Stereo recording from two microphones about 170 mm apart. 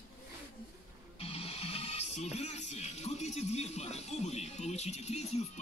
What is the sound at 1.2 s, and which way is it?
Speech, 35° left (ahead or behind).